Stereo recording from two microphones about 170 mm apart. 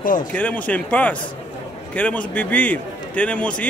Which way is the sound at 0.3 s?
10° left (ahead or behind).